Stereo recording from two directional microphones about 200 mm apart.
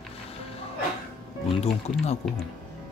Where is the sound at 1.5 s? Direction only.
30° left (ahead or behind).